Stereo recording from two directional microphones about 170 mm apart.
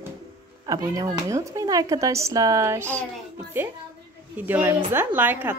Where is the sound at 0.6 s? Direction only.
20° right (ahead or behind).